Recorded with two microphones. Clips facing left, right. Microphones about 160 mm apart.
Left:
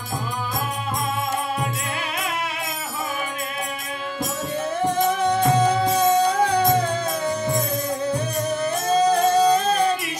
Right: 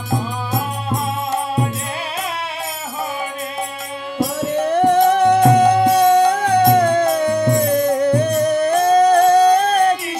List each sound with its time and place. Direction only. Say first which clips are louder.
4.5 s music: right 9 dB; 65° right (ahead or behind)